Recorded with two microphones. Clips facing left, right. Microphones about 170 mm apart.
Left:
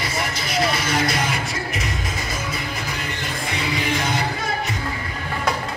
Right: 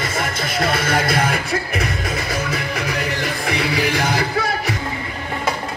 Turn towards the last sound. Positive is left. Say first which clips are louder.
# right 4 dB
turn(degrees=-70)  # may be behind; listen again after turning